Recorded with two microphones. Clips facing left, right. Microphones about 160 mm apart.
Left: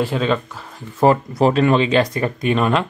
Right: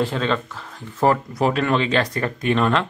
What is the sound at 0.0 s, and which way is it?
Speech, 10° left (ahead or behind).